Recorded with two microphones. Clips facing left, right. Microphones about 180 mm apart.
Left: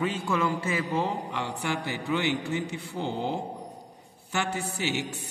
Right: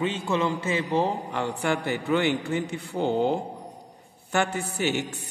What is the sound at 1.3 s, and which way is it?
A man's voice, 50° right (ahead or behind).